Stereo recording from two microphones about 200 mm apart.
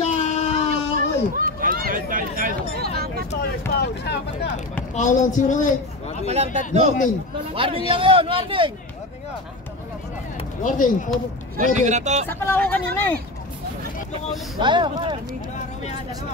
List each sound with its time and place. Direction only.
0.0 s a sound: 35° left (ahead or behind)
0.9 s a sound: 45° right (ahead or behind)
3.7 s speech: 55° left (ahead or behind)
4.9 s speech: 40° left (ahead or behind)
6.2 s a man's voice: 35° right (ahead or behind)
10.3 s speech: 40° left (ahead or behind)
11.5 s speech: 35° right (ahead or behind)
12.3 s speech: 10° left (ahead or behind)
14.6 s speech: 25° right (ahead or behind)